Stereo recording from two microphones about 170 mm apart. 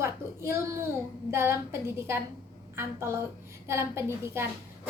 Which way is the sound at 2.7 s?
15° right (ahead or behind).